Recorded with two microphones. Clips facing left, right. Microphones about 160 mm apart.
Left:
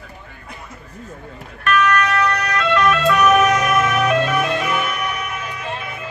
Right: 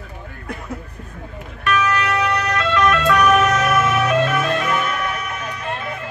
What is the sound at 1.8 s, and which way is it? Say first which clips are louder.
Music: left 3 dB; 30° right (ahead or behind).